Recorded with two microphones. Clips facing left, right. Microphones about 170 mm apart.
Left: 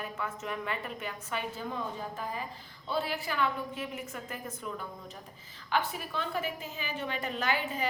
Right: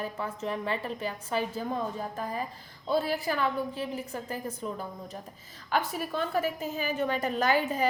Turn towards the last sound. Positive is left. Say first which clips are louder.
# right 6 dB
turn(degrees=-40)  # may be behind; listen again after turning